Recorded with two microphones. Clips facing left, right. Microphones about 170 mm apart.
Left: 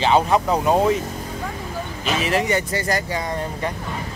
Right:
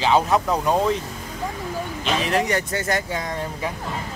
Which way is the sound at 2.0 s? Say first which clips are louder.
Left 1 dB; 5° left (ahead or behind).